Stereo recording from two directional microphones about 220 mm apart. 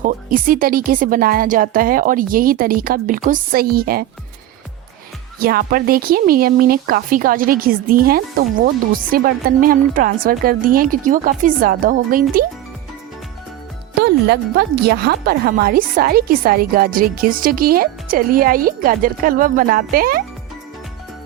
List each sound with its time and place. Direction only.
0.0 s speech: 40° right (ahead or behind)
5.4 s speech: 40° right (ahead or behind)
14.0 s speech: 50° right (ahead or behind)